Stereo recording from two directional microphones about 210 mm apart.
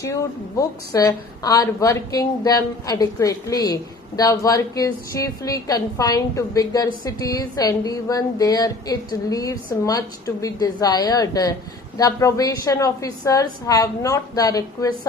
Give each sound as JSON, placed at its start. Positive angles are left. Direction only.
{"t": 0.6, "sound": "a woman's voice", "side_deg": 15}